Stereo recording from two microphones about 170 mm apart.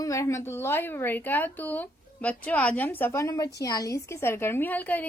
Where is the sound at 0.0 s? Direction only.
20° left (ahead or behind).